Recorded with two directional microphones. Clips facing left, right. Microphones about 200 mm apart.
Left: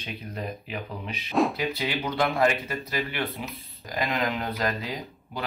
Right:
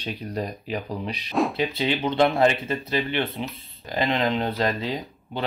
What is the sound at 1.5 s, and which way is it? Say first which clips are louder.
Speech: right 4 dB; 25° right (ahead or behind).